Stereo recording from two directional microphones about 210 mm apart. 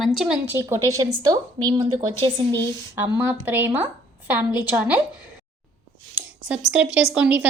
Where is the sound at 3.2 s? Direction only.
10° right (ahead or behind).